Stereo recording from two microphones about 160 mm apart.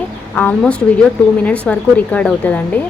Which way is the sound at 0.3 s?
10° left (ahead or behind).